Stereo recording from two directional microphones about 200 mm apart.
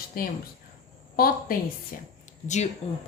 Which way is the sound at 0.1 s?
50° left (ahead or behind).